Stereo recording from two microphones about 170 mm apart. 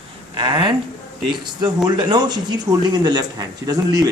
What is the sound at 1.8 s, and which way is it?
Speech, 25° right (ahead or behind).